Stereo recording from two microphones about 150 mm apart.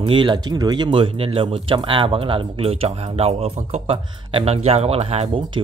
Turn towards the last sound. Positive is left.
turn(degrees=-40)  # may be behind; listen again after turning